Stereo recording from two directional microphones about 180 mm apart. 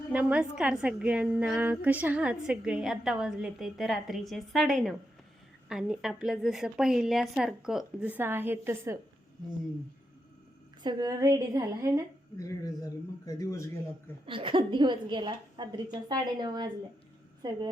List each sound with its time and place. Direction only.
0.1 s a woman's voice: 5° right (ahead or behind)
10.8 s a woman's voice: 20° right (ahead or behind)
12.4 s speech: 20° left (ahead or behind)
14.3 s a woman's voice: 30° right (ahead or behind)